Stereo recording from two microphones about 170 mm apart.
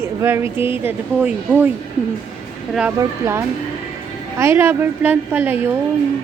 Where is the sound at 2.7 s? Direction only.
5° right (ahead or behind).